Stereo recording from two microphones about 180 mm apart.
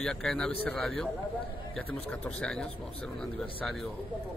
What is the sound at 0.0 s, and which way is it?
Speech, 5° left (ahead or behind).